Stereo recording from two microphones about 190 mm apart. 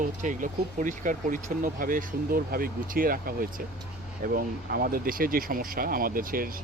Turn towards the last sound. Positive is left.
turn(degrees=-50)  # may be behind; listen again after turning